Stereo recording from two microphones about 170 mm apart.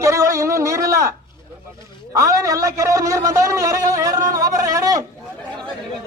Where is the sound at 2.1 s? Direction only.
20° right (ahead or behind).